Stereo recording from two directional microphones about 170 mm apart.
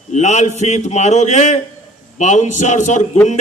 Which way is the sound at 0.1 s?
45° left (ahead or behind).